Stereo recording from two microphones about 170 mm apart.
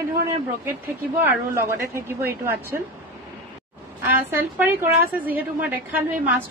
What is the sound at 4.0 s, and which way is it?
A woman's voice, 15° right (ahead or behind).